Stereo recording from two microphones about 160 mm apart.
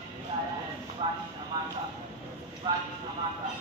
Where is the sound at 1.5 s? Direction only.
25° right (ahead or behind).